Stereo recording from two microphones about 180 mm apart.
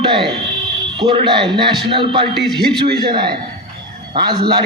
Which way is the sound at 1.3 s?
25° right (ahead or behind).